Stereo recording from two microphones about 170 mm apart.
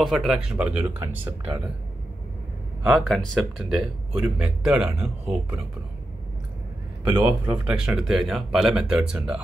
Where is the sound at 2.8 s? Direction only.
Centre (ahead or behind).